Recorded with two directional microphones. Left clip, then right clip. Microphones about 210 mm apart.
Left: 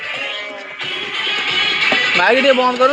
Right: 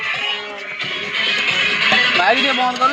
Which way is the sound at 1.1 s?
45° left (ahead or behind).